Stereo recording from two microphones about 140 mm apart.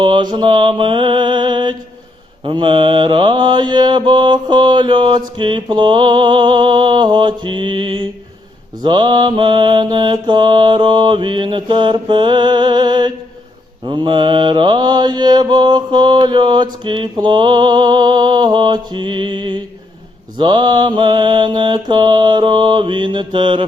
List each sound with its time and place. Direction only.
0.0 s mantra: 30° right (ahead or behind)